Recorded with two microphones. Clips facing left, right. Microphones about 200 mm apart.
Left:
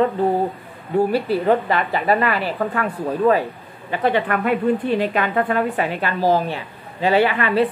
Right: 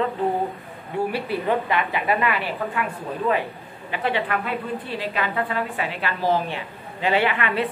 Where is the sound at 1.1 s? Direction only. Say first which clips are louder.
Left 6 dB; 40° left (ahead or behind).